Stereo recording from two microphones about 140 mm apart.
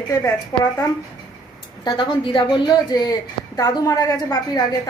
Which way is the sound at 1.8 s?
35° left (ahead or behind).